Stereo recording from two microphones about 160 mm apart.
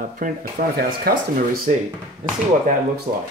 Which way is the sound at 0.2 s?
65° right (ahead or behind).